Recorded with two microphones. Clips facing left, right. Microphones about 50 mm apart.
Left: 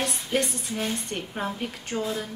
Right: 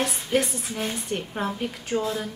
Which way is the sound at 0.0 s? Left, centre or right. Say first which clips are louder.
Right 2 dB; centre.